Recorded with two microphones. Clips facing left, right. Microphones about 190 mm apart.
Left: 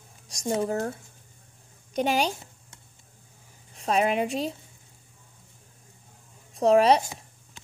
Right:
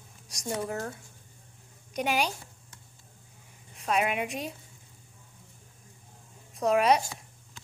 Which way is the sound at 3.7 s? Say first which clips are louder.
Left 4 dB; 30° left (ahead or behind).